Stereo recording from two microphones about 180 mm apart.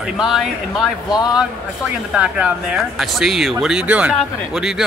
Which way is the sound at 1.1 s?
25° left (ahead or behind).